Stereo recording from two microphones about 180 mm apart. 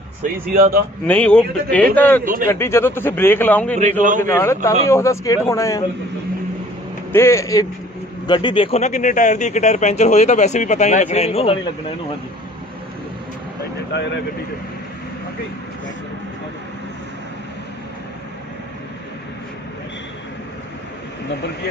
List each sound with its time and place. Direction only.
0.2 s a man's voice: 55° right (ahead or behind)
1.0 s a man's voice: 5° left (ahead or behind)
2.2 s a man's voice: 50° right (ahead or behind)
2.5 s a man's voice: 15° left (ahead or behind)
4.0 s a man's voice: 45° right (ahead or behind)
4.3 s a man's voice: 15° left (ahead or behind)
7.1 s a man's voice: 15° left (ahead or behind); by 11.5 s 35° left (ahead or behind)